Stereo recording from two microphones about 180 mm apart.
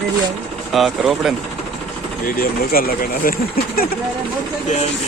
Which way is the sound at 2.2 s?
55° left (ahead or behind).